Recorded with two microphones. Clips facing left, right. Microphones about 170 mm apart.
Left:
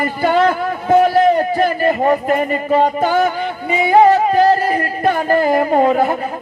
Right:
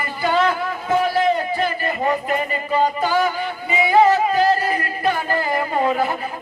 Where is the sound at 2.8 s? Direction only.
55° left (ahead or behind).